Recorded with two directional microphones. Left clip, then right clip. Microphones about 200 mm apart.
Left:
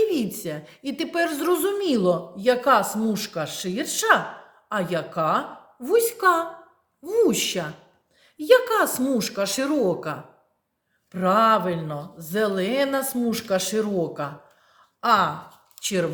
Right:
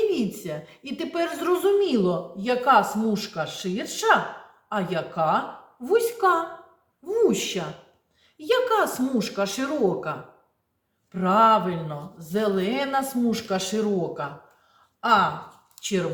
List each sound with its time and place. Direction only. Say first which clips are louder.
0.1 s a woman's voice: even; 50° left (ahead or behind)